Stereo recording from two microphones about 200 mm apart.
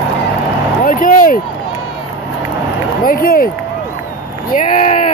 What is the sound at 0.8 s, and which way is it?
Vehicle, 40° left (ahead or behind).